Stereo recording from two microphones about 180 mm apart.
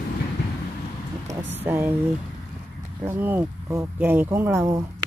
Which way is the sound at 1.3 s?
40° right (ahead or behind).